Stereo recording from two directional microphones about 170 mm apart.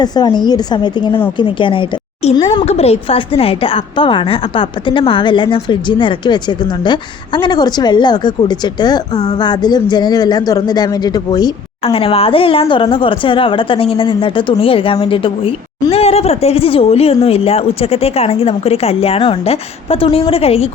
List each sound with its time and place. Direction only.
0.0 s a woman's voice: 25° left (ahead or behind)